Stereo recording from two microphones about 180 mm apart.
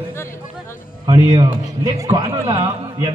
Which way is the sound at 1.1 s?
20° right (ahead or behind).